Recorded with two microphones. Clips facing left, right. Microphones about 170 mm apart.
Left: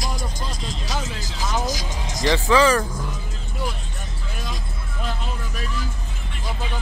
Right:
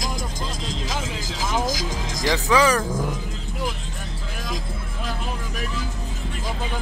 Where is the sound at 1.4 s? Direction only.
90° right.